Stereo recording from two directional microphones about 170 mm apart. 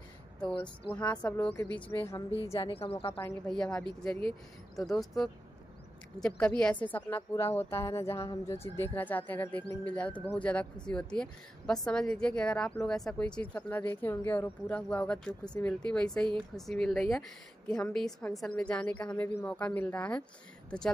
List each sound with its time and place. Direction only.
0.4 s speech: 5° left (ahead or behind)
2.6 s speech: 35° left (ahead or behind)
3.1 s speech: 10° left (ahead or behind)